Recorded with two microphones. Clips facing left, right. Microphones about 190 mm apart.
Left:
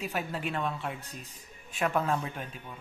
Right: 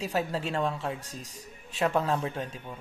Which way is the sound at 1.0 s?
90° right.